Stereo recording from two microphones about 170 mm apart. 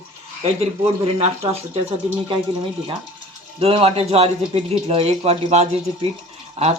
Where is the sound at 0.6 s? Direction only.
35° right (ahead or behind).